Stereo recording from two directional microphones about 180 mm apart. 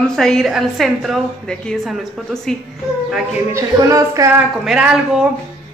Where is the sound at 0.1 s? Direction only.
Centre (ahead or behind).